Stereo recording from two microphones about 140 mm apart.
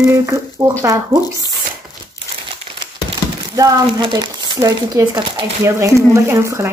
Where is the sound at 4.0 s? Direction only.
30° right (ahead or behind).